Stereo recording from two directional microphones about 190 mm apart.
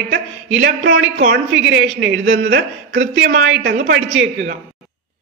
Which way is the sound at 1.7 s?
70° right (ahead or behind).